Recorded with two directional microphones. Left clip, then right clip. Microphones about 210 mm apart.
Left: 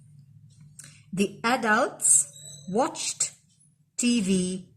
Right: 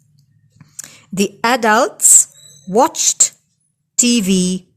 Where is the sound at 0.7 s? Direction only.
50° right (ahead or behind).